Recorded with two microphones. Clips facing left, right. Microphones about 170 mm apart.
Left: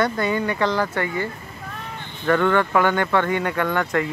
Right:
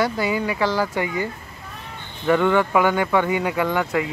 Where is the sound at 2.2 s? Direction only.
10° right (ahead or behind).